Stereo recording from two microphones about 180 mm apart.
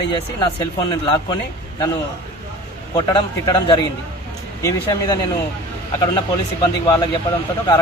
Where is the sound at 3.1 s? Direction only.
25° left (ahead or behind).